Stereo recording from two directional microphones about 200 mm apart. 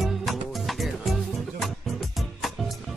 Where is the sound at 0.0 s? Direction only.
Centre (ahead or behind).